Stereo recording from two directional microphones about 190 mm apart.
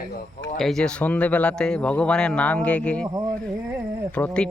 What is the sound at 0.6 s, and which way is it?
Speech, 5° left (ahead or behind).